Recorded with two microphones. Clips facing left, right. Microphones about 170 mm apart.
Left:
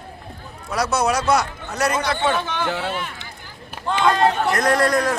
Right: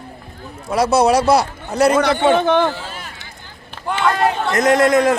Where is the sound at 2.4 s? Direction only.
55° right (ahead or behind).